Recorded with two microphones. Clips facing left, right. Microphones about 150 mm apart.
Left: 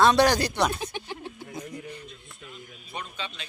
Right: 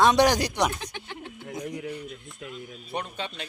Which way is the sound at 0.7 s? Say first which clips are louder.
Left 3 dB; 15° left (ahead or behind).